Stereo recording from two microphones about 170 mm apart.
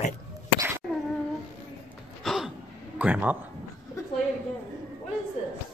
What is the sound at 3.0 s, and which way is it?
Speech, 10° right (ahead or behind).